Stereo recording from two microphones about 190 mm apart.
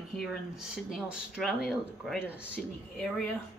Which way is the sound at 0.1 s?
Centre (ahead or behind).